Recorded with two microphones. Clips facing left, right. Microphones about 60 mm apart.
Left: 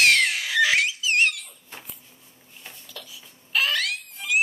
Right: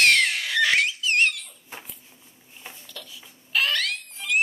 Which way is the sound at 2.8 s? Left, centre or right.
Centre.